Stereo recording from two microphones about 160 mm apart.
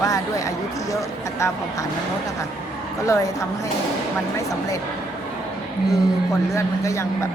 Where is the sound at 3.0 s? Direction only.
20° left (ahead or behind).